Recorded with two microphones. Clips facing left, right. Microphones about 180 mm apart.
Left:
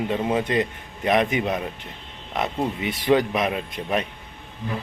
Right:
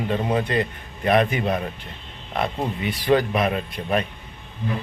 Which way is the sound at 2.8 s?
25° left (ahead or behind).